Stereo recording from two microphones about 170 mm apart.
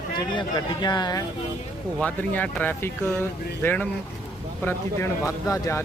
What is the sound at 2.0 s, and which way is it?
Speech, 10° left (ahead or behind).